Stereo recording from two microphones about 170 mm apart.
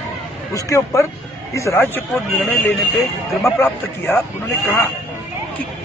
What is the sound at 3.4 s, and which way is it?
Speech, 15° left (ahead or behind).